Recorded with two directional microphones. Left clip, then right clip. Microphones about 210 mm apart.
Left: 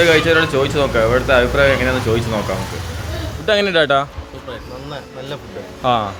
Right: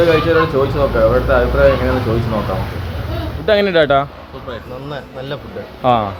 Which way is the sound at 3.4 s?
Centre (ahead or behind).